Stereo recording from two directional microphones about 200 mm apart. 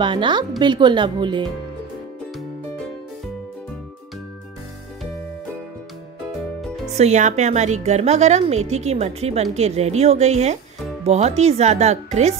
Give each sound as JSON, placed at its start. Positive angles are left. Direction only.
{"t": 0.0, "sound": "speech", "side_deg": -25}
{"t": 7.0, "sound": "a woman's voice", "side_deg": -35}